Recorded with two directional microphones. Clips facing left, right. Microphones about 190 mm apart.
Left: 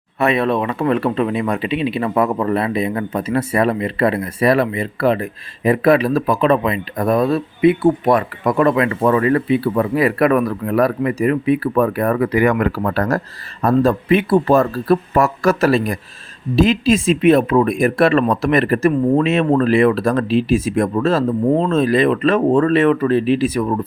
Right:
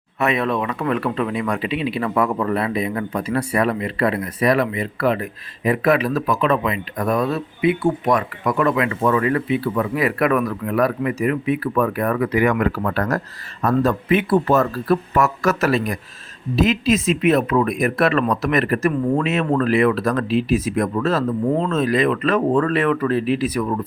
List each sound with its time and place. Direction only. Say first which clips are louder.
0.2 s speech: left 4 dB; 30° left (ahead or behind)